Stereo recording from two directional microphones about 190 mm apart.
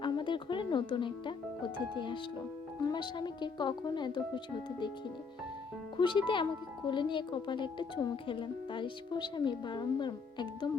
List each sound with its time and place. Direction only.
0.0 s music: 25° left (ahead or behind)
2.8 s speech: 25° left (ahead or behind)
6.0 s speech: 25° left (ahead or behind)